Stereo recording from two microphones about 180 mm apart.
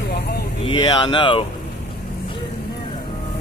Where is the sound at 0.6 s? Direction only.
25° left (ahead or behind).